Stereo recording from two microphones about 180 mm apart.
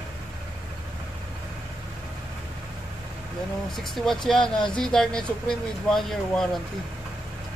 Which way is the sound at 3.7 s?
Centre (ahead or behind).